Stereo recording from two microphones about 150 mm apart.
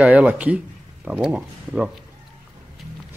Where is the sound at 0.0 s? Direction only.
10° right (ahead or behind).